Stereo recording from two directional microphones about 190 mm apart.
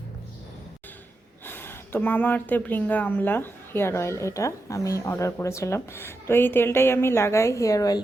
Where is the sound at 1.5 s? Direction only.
10° left (ahead or behind).